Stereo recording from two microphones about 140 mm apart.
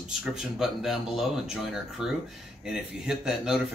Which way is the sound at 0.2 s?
5° right (ahead or behind).